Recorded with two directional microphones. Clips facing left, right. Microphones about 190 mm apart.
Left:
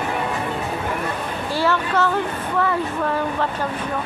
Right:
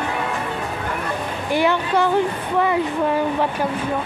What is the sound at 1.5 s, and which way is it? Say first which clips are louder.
Speech: right 3 dB; 15° right (ahead or behind).